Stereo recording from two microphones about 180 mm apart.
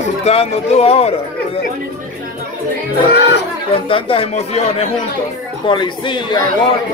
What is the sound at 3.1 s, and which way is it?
Speech, 65° left (ahead or behind).